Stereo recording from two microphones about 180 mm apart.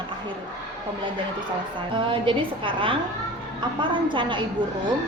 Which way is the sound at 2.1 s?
30° right (ahead or behind).